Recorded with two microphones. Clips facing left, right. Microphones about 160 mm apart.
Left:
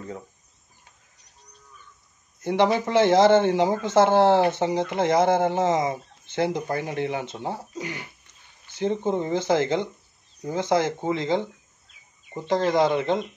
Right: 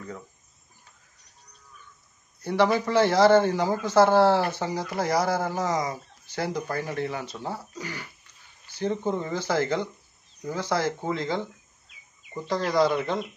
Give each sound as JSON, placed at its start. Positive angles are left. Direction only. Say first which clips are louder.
{"t": 2.4, "sound": "a man's voice", "louder": "left 1 dB", "side_deg": 20}
{"t": 12.6, "sound": "a man's voice", "louder": "left 1 dB", "side_deg": 20}